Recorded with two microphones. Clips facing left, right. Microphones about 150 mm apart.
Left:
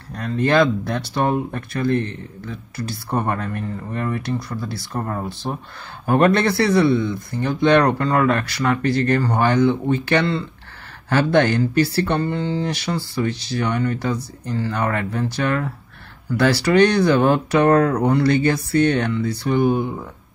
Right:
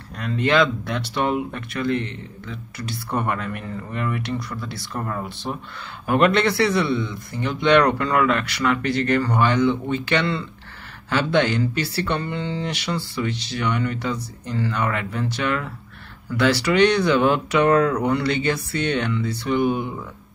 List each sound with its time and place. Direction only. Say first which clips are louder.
0.1 s speech: left 2 dB; 40° left (ahead or behind)